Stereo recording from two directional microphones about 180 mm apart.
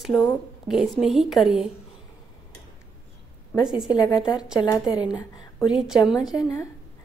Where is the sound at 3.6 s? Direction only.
5° right (ahead or behind).